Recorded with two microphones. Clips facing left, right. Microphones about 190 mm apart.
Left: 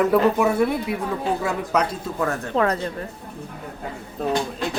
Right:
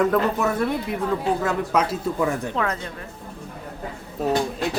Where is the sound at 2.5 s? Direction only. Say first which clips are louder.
Left 5 dB; 35° left (ahead or behind).